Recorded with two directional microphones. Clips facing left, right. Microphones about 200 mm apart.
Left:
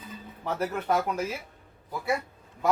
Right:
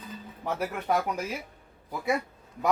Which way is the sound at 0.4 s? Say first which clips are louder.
Left 1 dB; 10° right (ahead or behind).